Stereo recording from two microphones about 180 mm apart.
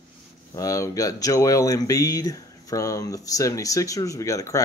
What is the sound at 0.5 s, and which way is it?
Speech, 20° left (ahead or behind).